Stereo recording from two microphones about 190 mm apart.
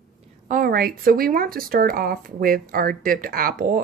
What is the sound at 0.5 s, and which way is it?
Speech, 50° right (ahead or behind).